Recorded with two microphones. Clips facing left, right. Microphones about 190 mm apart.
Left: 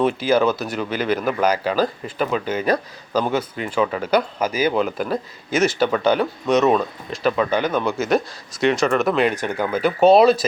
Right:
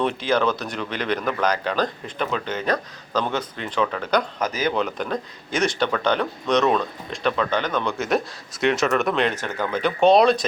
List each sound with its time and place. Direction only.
0.0 s speech: 5° left (ahead or behind)